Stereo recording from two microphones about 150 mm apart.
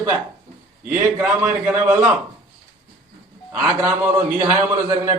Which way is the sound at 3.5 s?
15° right (ahead or behind).